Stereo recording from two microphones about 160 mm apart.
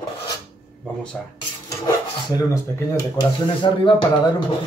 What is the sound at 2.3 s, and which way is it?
Speech, 20° left (ahead or behind).